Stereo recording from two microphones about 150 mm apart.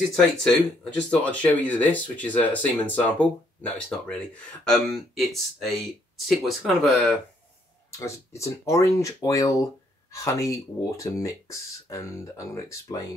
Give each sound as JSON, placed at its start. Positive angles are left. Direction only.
{"t": 0.1, "sound": "speech", "side_deg": 5}
{"t": 8.0, "sound": "speech", "side_deg": 20}